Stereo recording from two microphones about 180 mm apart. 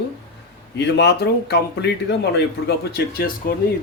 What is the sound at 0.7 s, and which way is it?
Speech, 70° left (ahead or behind).